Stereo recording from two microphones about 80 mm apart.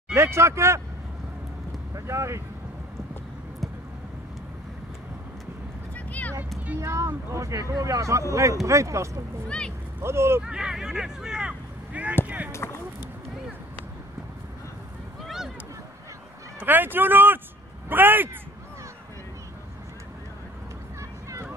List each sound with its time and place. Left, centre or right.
0.1 s speech: right
2.0 s speech: right
5.9 s a sound: centre
6.8 s speech: right
10.4 s speech: centre
12.4 s speech: left
15.2 s a sound: centre
16.5 s a man's voice: right